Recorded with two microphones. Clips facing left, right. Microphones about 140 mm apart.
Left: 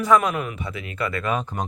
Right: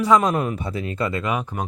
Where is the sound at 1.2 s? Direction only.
15° right (ahead or behind).